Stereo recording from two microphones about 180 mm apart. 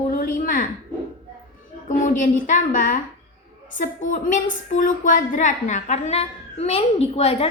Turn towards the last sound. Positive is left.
turn(degrees=35)  # may be behind; listen again after turning